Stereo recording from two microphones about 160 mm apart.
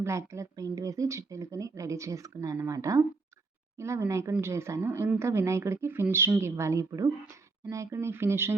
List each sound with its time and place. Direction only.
0.0 s speech: 20° right (ahead or behind)